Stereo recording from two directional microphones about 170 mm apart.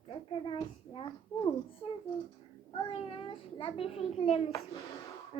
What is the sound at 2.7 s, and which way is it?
A child's voice, 30° left (ahead or behind).